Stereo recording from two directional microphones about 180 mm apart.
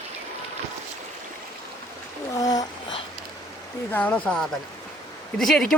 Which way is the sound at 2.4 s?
20° left (ahead or behind).